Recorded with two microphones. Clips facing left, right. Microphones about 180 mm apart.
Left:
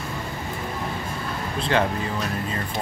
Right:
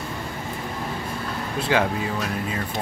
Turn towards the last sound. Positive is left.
turn(degrees=-10)  # may be behind; listen again after turning